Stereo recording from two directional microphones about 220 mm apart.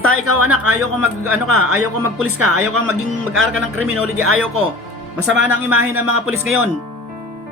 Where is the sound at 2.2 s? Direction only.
90° right.